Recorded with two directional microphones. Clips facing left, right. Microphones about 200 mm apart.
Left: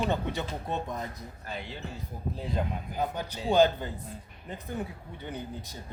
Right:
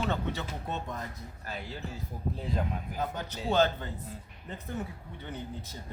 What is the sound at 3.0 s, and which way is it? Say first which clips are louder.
Speech: left 3 dB; 10° left (ahead or behind).